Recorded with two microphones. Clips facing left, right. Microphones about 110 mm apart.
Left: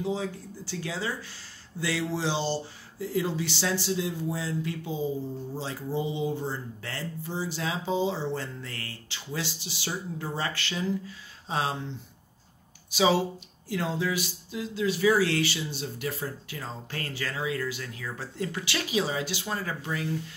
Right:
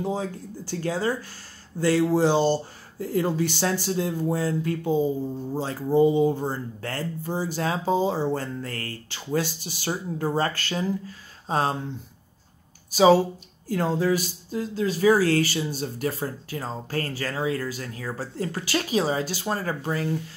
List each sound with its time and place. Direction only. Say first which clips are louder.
0.0 s speech: right 2 dB; 50° right (ahead or behind)
12.9 s speech: right 7 dB; 45° right (ahead or behind)